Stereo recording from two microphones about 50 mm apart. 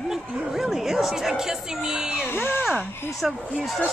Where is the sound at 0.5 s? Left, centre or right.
Centre.